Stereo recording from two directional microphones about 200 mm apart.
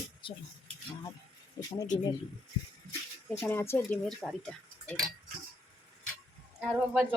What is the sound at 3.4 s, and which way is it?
Speech, 10° left (ahead or behind).